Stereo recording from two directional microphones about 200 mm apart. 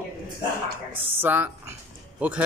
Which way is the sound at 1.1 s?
10° right (ahead or behind).